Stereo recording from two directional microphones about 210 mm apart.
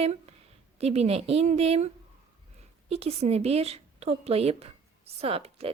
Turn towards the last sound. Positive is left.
turn(degrees=-30)  # may be behind; listen again after turning